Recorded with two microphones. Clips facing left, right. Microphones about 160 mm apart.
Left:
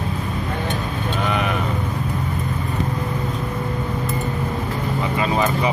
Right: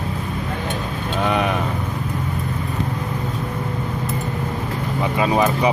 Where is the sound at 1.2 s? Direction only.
20° right (ahead or behind).